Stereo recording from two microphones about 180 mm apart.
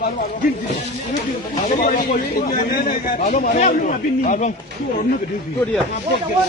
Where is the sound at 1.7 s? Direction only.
50° left (ahead or behind).